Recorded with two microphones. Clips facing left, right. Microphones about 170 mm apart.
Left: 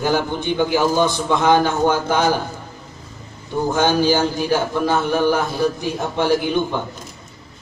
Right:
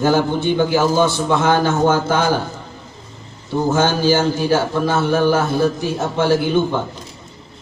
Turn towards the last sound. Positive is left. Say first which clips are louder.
# right 2 dB
turn(degrees=15)  # may be behind; listen again after turning